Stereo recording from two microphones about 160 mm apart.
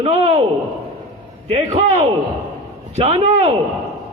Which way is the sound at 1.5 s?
45° right (ahead or behind).